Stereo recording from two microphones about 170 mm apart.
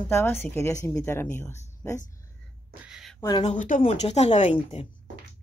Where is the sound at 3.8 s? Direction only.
35° left (ahead or behind).